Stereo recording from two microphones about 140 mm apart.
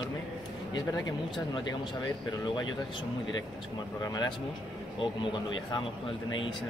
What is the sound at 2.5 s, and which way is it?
Speech, 30° left (ahead or behind).